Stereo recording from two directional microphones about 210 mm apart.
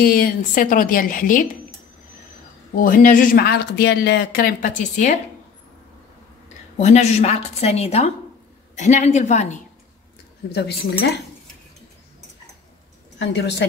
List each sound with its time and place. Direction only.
0.0 s a woman's voice: 45° left (ahead or behind)
2.8 s speech: 40° left (ahead or behind)
6.8 s a woman's voice: 30° left (ahead or behind)
10.5 s speech: 50° left (ahead or behind)
13.2 s a woman's voice: 55° left (ahead or behind)